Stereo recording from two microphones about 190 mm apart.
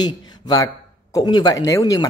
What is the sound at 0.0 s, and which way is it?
A man's voice, 20° left (ahead or behind).